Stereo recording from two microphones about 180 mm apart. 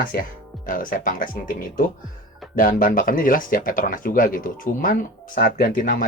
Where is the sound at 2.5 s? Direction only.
50° left (ahead or behind).